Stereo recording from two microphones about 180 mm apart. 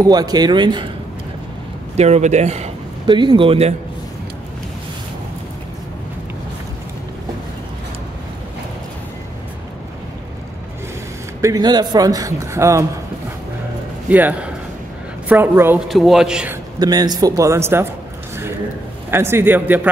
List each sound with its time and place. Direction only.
0.0 s a man's voice: 20° right (ahead or behind)
2.0 s speech: 35° right (ahead or behind)
11.4 s a man's voice: 20° right (ahead or behind)
14.0 s a man's voice: 10° right (ahead or behind)
15.9 s a man's voice: centre (ahead or behind)
16.8 s a man's voice: 20° right (ahead or behind)
19.0 s a man's voice: 15° right (ahead or behind)